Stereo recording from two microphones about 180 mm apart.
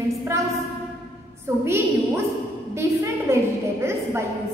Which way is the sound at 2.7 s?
15° right (ahead or behind).